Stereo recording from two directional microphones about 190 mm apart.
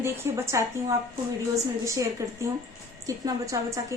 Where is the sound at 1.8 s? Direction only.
15° right (ahead or behind).